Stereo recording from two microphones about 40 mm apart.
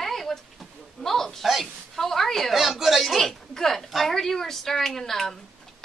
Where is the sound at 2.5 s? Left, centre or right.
Centre.